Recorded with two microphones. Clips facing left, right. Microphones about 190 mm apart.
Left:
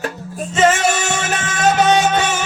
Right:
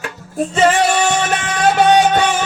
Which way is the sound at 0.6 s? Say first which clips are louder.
Right 1 dB; 45° left (ahead or behind).